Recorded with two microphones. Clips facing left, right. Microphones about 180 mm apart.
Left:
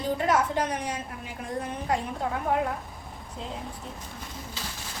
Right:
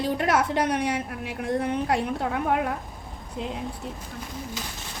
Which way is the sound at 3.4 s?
70° right (ahead or behind).